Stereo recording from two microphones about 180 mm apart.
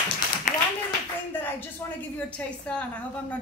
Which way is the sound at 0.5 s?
45° left (ahead or behind).